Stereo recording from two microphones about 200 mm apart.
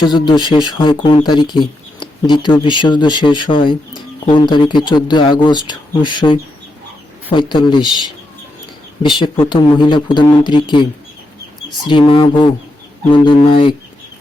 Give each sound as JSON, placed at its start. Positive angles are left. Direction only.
{"t": 0.0, "sound": "speech", "side_deg": 20}
{"t": 9.0, "sound": "speech", "side_deg": 25}
{"t": 11.9, "sound": "speech", "side_deg": 25}